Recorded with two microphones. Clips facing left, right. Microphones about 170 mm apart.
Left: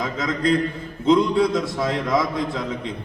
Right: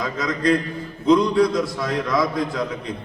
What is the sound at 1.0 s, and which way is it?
Speech, 25° left (ahead or behind).